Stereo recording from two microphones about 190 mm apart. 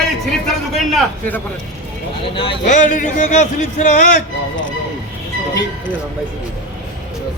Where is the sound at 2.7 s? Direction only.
40° left (ahead or behind).